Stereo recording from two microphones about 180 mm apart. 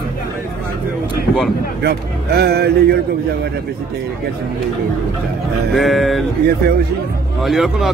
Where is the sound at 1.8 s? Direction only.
65° right (ahead or behind).